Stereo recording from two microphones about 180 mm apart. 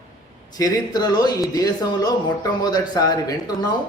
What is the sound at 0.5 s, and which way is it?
Speech, 20° left (ahead or behind).